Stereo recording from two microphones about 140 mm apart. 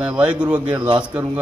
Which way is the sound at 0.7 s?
35° right (ahead or behind).